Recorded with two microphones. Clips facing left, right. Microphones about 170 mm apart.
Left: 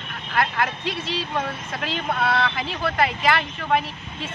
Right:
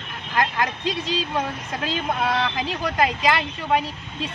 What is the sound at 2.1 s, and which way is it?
Speech, 15° right (ahead or behind).